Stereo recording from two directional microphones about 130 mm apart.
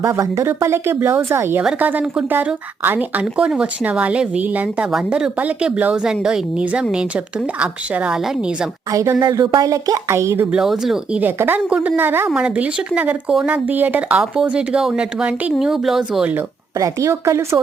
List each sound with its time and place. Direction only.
0.0 s speech: 25° right (ahead or behind); by 8.5 s 5° right (ahead or behind)
8.9 s speech: 25° right (ahead or behind)
10.5 s speech: 5° right (ahead or behind)
16.7 s speech: 25° right (ahead or behind)